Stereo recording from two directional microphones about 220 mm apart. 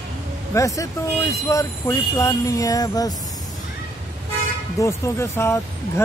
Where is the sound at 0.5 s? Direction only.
15° left (ahead or behind).